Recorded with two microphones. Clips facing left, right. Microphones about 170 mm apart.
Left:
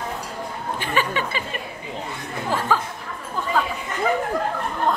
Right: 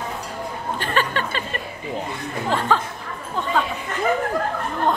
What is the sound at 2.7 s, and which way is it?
Speech, 10° left (ahead or behind).